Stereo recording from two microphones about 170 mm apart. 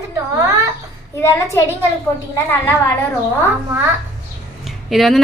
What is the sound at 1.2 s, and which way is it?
Speech, 20° left (ahead or behind).